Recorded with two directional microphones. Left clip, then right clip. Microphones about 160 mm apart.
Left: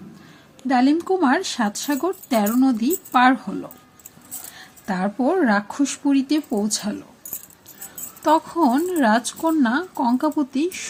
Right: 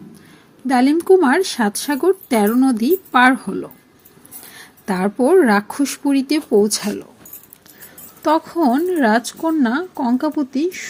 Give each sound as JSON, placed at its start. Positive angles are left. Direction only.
{"t": 0.7, "sound": "speech", "side_deg": -25}
{"t": 8.2, "sound": "speech", "side_deg": -15}